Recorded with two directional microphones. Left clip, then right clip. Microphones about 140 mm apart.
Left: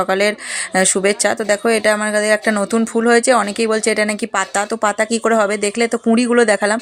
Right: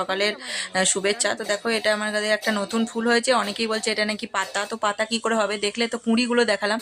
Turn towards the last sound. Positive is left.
turn(degrees=40)  # may be behind; listen again after turning